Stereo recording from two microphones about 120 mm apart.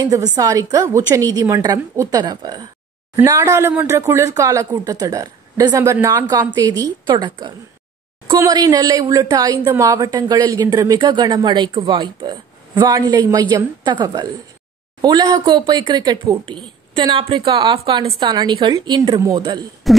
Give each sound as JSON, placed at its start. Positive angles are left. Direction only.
{"t": 0.0, "sound": "speech", "side_deg": -30}
{"t": 19.9, "sound": "cough", "side_deg": 0}